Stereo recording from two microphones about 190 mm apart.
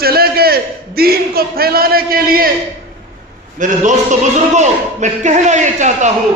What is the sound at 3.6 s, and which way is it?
A man's voice, 40° right (ahead or behind).